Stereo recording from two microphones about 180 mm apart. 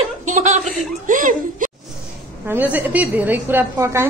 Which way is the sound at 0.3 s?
40° right (ahead or behind).